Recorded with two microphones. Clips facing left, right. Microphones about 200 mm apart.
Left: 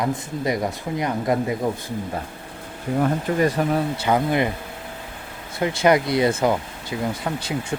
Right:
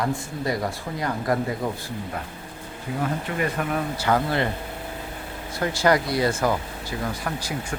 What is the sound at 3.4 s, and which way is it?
Speech, 35° left (ahead or behind).